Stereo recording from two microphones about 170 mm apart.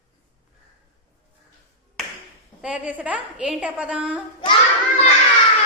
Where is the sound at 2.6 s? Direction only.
5° right (ahead or behind).